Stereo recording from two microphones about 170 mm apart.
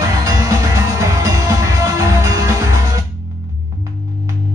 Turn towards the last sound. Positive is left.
turn(degrees=-15)  # may be behind; listen again after turning